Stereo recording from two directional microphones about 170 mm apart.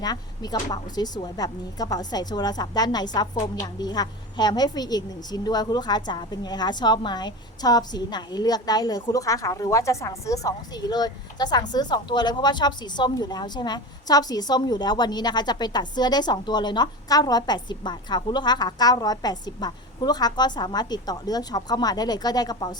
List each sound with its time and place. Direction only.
0.0 s speech: 25° left (ahead or behind)